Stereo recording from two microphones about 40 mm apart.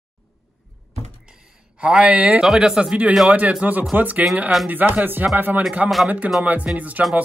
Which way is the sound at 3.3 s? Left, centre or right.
Right.